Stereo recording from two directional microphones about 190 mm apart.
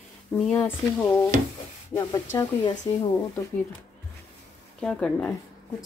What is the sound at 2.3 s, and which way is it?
Speech, 25° left (ahead or behind).